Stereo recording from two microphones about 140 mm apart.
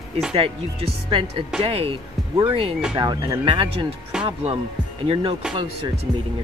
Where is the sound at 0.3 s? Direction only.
45° right (ahead or behind).